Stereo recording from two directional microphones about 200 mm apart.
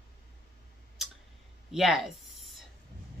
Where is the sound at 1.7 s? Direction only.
Centre (ahead or behind).